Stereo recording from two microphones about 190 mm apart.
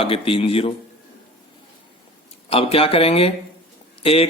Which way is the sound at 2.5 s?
30° left (ahead or behind).